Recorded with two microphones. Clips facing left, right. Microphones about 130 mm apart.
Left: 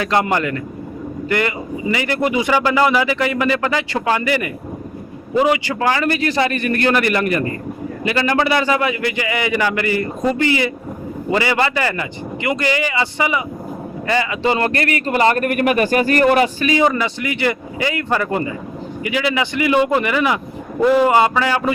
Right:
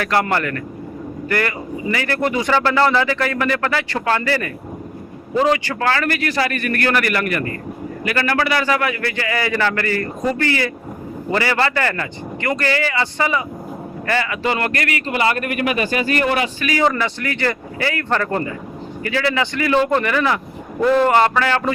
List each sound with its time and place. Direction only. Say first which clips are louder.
0.0 s a man's voice: left 1 dB; 20° left (ahead or behind)
15.0 s a man's voice: left 5 dB; 40° left (ahead or behind)
16.6 s speech: left 2 dB; 20° left (ahead or behind)